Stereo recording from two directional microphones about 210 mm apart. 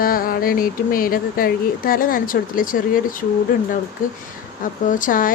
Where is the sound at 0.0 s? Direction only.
45° left (ahead or behind).